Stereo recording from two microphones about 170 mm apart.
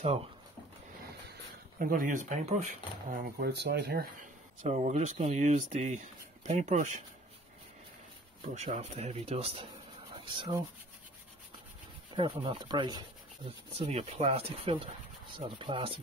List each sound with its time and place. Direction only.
1.3 s speech: 55° right (ahead or behind)
4.6 s speech: 45° right (ahead or behind)
8.5 s speech: 40° right (ahead or behind)
12.1 s speech: 25° right (ahead or behind)
13.7 s speech: 40° right (ahead or behind)